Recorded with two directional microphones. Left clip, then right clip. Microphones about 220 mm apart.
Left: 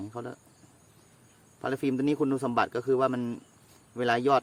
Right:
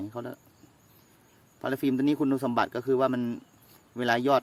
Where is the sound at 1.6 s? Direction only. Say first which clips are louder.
Right 1 dB; 15° right (ahead or behind).